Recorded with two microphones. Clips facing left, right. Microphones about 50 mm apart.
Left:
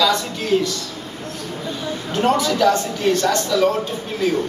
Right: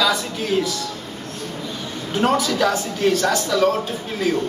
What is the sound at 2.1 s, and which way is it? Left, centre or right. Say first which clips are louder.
Speech: left 1 dB; centre.